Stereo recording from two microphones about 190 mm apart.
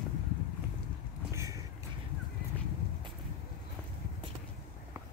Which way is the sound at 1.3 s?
15° right (ahead or behind).